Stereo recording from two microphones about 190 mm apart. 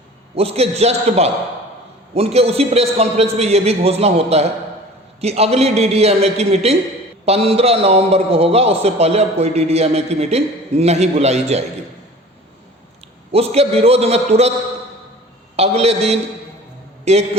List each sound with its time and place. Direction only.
0.3 s a man's voice: 30° right (ahead or behind)
13.3 s a man's voice: 30° right (ahead or behind)
15.5 s a man's voice: 35° right (ahead or behind)